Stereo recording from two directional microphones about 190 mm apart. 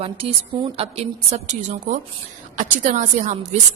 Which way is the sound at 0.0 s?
30° right (ahead or behind).